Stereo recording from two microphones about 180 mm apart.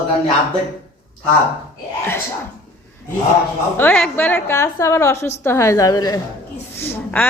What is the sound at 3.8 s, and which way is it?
A woman's voice, 10° left (ahead or behind).